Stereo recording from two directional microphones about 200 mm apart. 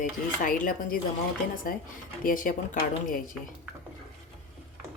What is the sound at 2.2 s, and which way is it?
A woman's voice, 40° left (ahead or behind).